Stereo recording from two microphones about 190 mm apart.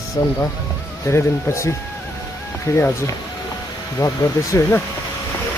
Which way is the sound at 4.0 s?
15° left (ahead or behind).